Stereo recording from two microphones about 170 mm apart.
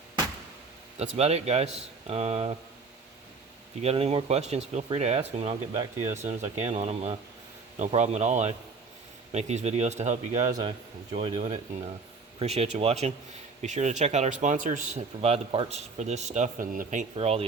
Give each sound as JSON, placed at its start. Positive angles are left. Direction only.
{"t": 0.9, "sound": "speech", "side_deg": -40}
{"t": 3.8, "sound": "a man's voice", "side_deg": -40}